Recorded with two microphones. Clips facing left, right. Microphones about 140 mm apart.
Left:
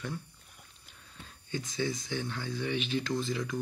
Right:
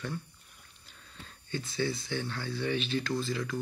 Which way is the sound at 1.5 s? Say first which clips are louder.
Right 1 dB; 15° left (ahead or behind).